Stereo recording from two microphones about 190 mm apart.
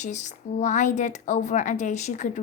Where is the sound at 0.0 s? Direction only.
40° left (ahead or behind).